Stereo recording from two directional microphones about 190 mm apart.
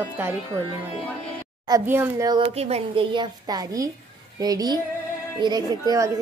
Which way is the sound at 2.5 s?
35° right (ahead or behind).